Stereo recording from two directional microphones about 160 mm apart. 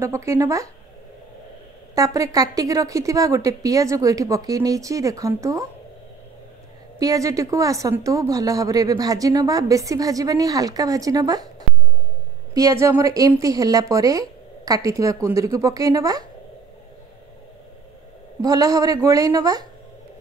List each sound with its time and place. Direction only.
0.0 s speech: 15° right (ahead or behind)
2.0 s a woman's voice: 20° right (ahead or behind)
7.0 s a woman's voice: 20° right (ahead or behind)
12.5 s a woman's voice: 20° right (ahead or behind)
18.4 s a woman's voice: 20° right (ahead or behind)